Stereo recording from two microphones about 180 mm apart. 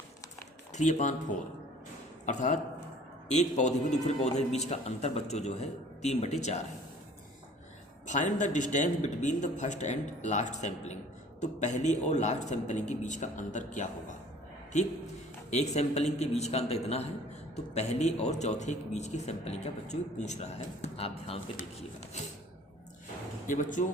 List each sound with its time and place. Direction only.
0.7 s speech: 40° left (ahead or behind)
2.2 s speech: 45° left (ahead or behind)
8.0 s speech: 45° left (ahead or behind)
15.4 s speech: 40° left (ahead or behind)
23.5 s speech: 45° left (ahead or behind)